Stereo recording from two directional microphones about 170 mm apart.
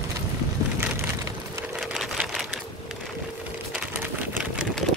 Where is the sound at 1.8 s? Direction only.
Centre (ahead or behind).